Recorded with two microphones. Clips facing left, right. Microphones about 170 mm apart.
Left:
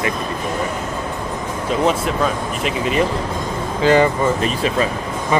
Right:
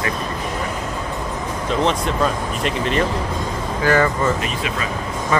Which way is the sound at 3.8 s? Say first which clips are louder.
Left 4 dB; 20° left (ahead or behind).